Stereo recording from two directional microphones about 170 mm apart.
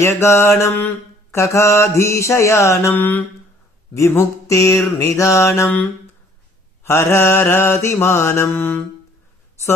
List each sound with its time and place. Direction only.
0.0 s mantra: 15° left (ahead or behind)